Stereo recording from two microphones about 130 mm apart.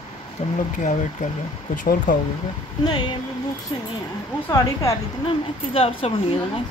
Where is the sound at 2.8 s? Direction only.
35° left (ahead or behind).